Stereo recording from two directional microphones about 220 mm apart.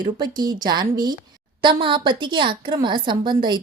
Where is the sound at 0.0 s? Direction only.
20° right (ahead or behind).